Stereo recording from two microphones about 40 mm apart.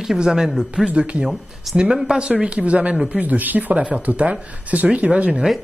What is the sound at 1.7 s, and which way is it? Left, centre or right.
Speech, centre.